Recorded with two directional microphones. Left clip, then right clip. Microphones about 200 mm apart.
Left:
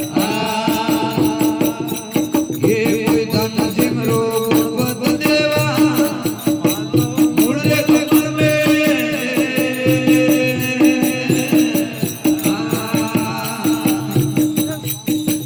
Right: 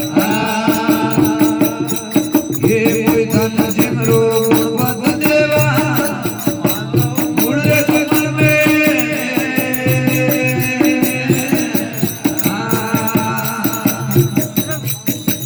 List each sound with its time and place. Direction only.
0.1 s music: 30° left (ahead or behind)
7.2 s music: 30° left (ahead or behind)
12.7 s music: 25° left (ahead or behind)